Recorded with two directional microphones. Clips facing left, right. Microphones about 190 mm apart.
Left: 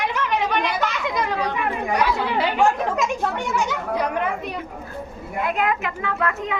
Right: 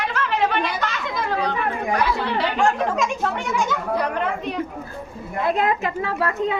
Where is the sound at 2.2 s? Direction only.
5° left (ahead or behind).